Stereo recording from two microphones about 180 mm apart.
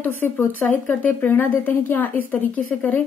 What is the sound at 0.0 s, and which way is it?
A woman's voice, 10° left (ahead or behind).